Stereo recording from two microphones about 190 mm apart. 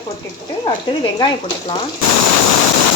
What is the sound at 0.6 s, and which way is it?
Speech, 20° left (ahead or behind).